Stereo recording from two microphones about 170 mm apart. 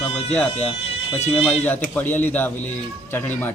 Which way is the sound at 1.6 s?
10° left (ahead or behind).